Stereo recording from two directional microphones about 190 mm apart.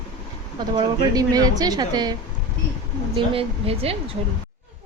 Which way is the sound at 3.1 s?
30° right (ahead or behind).